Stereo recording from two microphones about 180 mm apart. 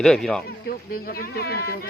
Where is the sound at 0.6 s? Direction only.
55° left (ahead or behind).